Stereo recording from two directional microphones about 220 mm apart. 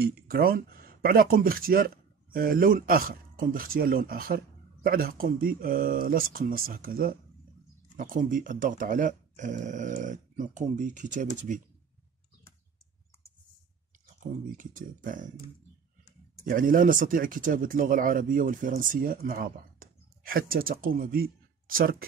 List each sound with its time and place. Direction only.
0.0 s speech: 45° right (ahead or behind)
14.6 s speech: 35° right (ahead or behind)
16.4 s speech: 40° right (ahead or behind)